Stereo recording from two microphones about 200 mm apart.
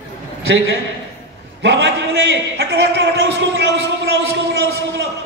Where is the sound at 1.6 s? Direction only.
60° right (ahead or behind).